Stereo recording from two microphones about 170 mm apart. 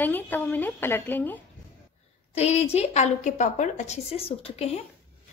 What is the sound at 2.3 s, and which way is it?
A woman's voice, 40° left (ahead or behind).